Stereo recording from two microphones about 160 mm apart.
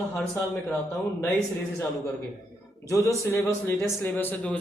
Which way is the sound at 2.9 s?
20° left (ahead or behind).